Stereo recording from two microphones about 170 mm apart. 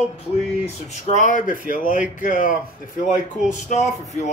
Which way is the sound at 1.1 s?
50° left (ahead or behind).